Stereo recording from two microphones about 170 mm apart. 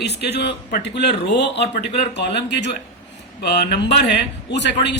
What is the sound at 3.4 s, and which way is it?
A man's voice, 80° left.